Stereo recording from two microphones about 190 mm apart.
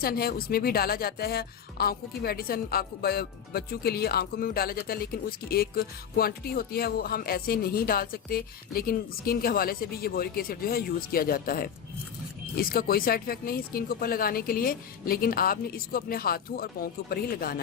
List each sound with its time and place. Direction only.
0.0 s speech: 50° left (ahead or behind)